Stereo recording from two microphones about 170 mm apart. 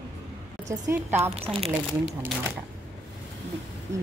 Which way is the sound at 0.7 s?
15° right (ahead or behind).